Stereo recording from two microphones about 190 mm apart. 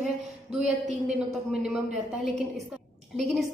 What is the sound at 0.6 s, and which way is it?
Speech, 35° right (ahead or behind).